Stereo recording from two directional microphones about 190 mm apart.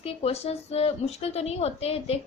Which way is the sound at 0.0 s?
30° left (ahead or behind).